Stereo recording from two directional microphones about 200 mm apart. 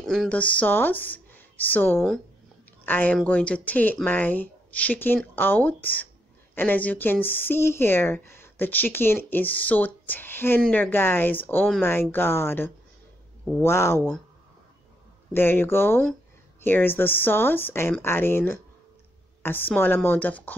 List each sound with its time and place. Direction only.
0.0 s speech: centre (ahead or behind)
15.3 s speech: 10° left (ahead or behind)